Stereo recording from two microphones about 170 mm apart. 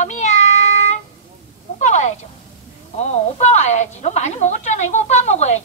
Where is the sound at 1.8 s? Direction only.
45° left (ahead or behind).